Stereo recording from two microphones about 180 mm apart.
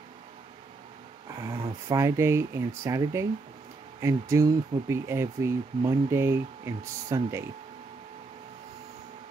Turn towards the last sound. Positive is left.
turn(degrees=-15)  # may be behind; listen again after turning